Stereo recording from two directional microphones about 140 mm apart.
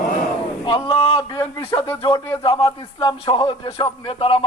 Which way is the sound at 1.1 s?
30° left (ahead or behind).